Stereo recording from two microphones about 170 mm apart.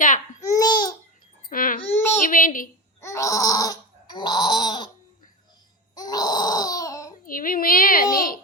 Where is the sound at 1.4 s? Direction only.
55° left (ahead or behind).